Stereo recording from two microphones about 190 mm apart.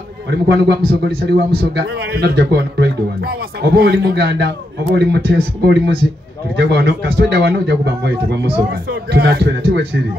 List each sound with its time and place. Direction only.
0.3 s speech: 60° right (ahead or behind)